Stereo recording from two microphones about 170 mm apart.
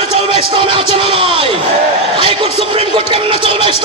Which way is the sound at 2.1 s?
30° right (ahead or behind).